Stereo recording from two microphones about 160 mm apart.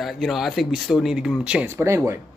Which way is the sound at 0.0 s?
Centre (ahead or behind).